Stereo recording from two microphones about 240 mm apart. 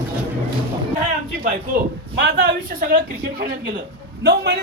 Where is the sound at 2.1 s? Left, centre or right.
Right.